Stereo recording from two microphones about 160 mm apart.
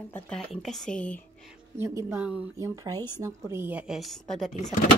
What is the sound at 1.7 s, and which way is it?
Speech, 15° right (ahead or behind).